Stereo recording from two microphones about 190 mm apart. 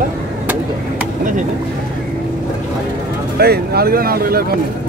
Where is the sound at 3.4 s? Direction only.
55° right (ahead or behind).